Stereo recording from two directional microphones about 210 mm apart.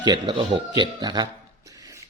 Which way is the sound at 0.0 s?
20° right (ahead or behind).